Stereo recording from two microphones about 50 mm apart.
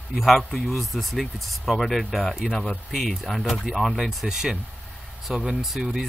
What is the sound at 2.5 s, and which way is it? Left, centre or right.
Speech, centre.